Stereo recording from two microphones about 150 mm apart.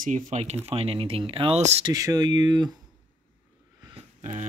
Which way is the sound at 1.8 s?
25° right (ahead or behind).